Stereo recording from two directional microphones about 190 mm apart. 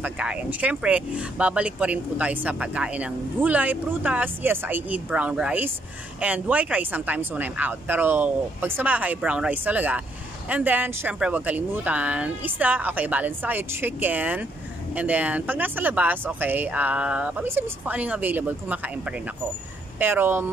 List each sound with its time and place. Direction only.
0.0 s speech: 5° right (ahead or behind)
20.0 s speech: 10° right (ahead or behind)